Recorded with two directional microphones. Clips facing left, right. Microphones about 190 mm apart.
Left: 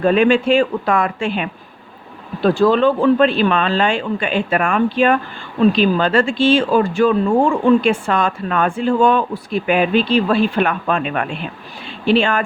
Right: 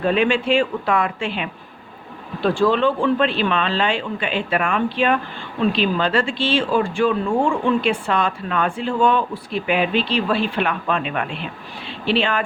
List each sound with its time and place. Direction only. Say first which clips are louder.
0.0 s speech: left 5 dB; 45° left (ahead or behind)